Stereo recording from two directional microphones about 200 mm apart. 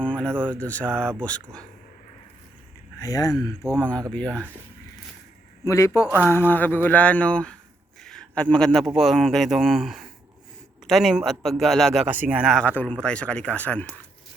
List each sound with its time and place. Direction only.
0.0 s a man's voice: 5° left (ahead or behind)
3.0 s speech: 20° left (ahead or behind)
3.8 s a man's voice: 5° left (ahead or behind)
5.6 s a man's voice: 15° left (ahead or behind)